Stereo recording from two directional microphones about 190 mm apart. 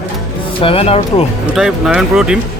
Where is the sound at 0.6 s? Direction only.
30° left (ahead or behind).